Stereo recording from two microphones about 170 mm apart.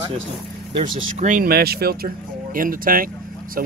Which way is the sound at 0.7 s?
45° right (ahead or behind).